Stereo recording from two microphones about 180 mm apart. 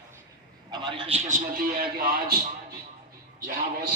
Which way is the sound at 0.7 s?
25° right (ahead or behind).